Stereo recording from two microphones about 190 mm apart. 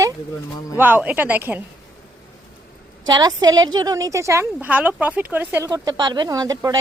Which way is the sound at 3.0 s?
20° right (ahead or behind).